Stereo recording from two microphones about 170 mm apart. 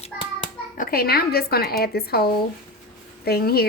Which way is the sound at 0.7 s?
55° left (ahead or behind).